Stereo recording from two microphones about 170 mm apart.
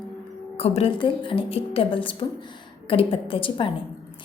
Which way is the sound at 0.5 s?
35° left (ahead or behind).